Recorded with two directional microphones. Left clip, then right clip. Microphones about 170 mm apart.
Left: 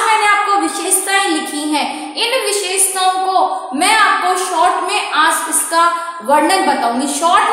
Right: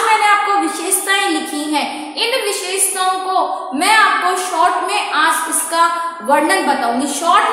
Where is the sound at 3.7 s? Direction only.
10° left (ahead or behind).